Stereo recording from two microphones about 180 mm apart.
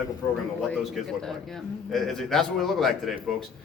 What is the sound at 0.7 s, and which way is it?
A man's voice, centre (ahead or behind).